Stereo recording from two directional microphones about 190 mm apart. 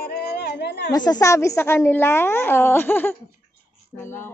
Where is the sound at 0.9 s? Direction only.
20° left (ahead or behind).